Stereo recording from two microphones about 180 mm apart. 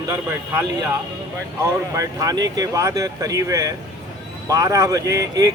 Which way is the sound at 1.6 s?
20° right (ahead or behind).